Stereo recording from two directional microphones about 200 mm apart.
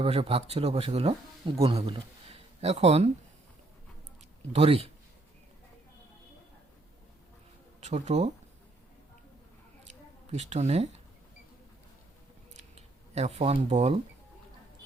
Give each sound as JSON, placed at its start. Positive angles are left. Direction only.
{"t": 0.0, "sound": "speech", "side_deg": -30}
{"t": 4.5, "sound": "speech", "side_deg": -30}
{"t": 7.8, "sound": "speech", "side_deg": -35}
{"t": 10.3, "sound": "speech", "side_deg": -35}
{"t": 12.5, "sound": "a sound", "side_deg": -35}